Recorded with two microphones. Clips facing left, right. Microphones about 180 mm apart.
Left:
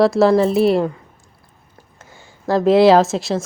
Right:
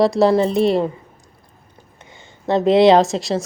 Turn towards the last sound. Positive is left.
turn(degrees=0)  # may be behind; listen again after turning